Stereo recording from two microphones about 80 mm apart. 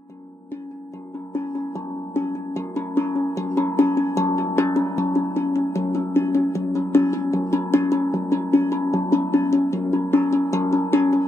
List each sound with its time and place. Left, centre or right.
2.1 s music: left